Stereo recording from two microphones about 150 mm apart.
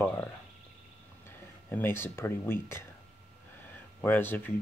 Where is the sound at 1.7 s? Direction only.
15° left (ahead or behind).